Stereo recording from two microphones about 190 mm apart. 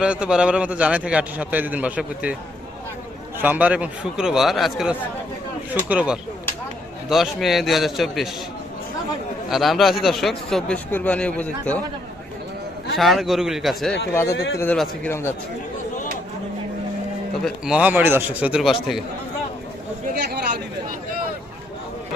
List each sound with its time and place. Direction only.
0.0 s a man's voice: 5° right (ahead or behind)
3.3 s a man's voice: 10° right (ahead or behind)
9.5 s a man's voice: centre (ahead or behind)
13.0 s a man's voice: centre (ahead or behind)
14.1 s speech: 10° left (ahead or behind)
14.3 s speech: 60° left (ahead or behind)
14.6 s speech: 10° left (ahead or behind)
17.4 s a man's voice: 5° right (ahead or behind)